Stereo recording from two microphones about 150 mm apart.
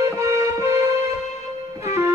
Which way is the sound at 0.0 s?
20° right (ahead or behind).